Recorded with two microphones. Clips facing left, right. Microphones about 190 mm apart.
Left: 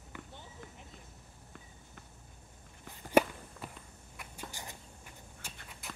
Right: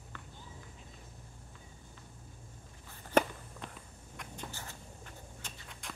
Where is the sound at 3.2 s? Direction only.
10° left (ahead or behind).